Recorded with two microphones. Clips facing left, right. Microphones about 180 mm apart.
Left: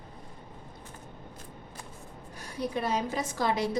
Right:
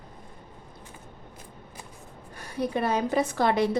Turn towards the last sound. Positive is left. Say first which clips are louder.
# right 6 dB
turn(degrees=-60)  # may be behind; listen again after turning